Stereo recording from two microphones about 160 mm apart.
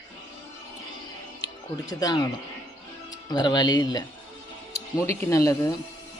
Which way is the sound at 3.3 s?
25° left (ahead or behind).